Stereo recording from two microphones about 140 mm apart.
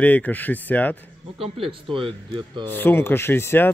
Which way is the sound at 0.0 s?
10° left (ahead or behind).